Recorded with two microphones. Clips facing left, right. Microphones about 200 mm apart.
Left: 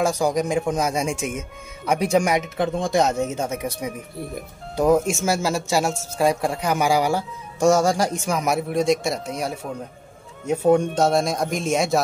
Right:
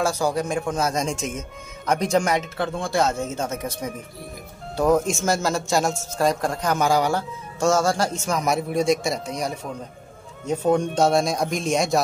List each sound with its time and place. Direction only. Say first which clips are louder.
0.0 s speech: left 2 dB; 15° left (ahead or behind)